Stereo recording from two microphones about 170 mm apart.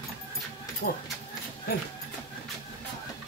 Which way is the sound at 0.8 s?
60° left (ahead or behind).